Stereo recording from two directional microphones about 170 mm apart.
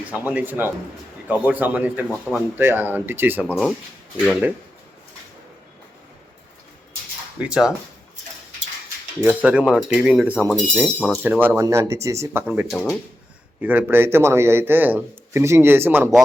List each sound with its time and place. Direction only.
0.1 s a man's voice: 10° right (ahead or behind)
7.3 s speech: 5° right (ahead or behind)
9.2 s a man's voice: 5° right (ahead or behind)
11.2 s a man's voice: 10° right (ahead or behind)
12.7 s speech: centre (ahead or behind)
13.6 s a man's voice: 10° right (ahead or behind)